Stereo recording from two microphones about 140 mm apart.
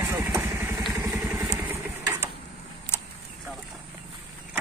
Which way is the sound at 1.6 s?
15° right (ahead or behind).